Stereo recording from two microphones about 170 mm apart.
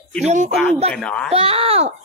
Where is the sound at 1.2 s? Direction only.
35° right (ahead or behind).